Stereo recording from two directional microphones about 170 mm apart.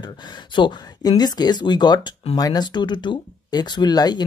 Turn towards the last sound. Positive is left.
turn(degrees=25)  # may be behind; listen again after turning